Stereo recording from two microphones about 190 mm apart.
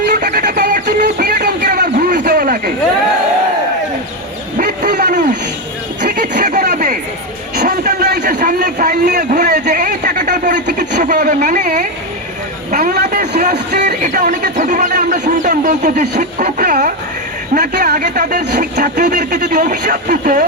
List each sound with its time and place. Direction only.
0.0 s music: 60° right (ahead or behind)
4.5 s a sound: 45° right (ahead or behind)
12.7 s a sound: 55° right (ahead or behind)
13.7 s music: 40° right (ahead or behind)
14.5 s speech: 40° right (ahead or behind)
17.5 s speech: 55° right (ahead or behind)